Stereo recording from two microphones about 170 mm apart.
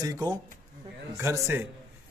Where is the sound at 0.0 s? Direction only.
20° right (ahead or behind).